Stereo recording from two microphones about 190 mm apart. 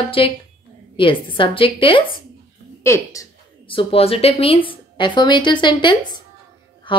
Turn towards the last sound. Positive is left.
turn(degrees=25)  # may be behind; listen again after turning